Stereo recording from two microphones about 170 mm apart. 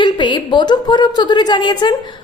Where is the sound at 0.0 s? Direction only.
25° left (ahead or behind).